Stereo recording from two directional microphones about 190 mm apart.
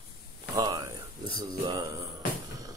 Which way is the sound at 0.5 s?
20° right (ahead or behind).